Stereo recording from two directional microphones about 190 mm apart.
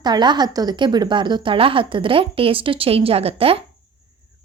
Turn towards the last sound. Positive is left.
turn(degrees=-30)  # may be behind; listen again after turning